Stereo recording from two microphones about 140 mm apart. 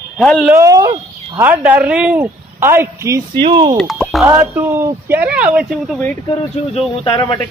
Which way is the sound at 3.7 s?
Centre (ahead or behind).